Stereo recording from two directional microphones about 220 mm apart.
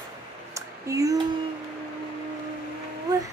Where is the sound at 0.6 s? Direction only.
15° right (ahead or behind).